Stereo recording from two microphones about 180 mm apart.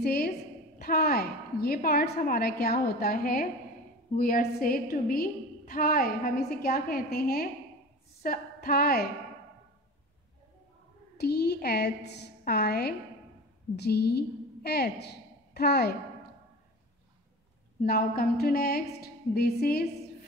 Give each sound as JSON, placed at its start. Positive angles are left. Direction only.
{"t": 0.0, "sound": "a woman's voice", "side_deg": 60}
{"t": 11.1, "sound": "a woman's voice", "side_deg": 65}
{"t": 17.8, "sound": "a woman's voice", "side_deg": 55}